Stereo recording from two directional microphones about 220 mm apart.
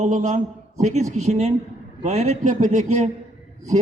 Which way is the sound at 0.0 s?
35° right (ahead or behind).